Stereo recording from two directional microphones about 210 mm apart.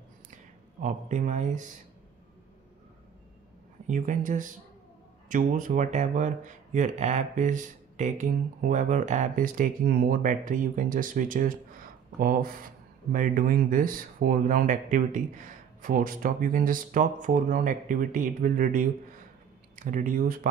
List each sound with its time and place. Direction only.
0.7 s speech: 35° right (ahead or behind)
3.8 s speech: 35° right (ahead or behind)